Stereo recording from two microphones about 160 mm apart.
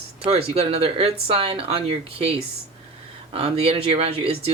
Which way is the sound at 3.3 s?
40° right (ahead or behind).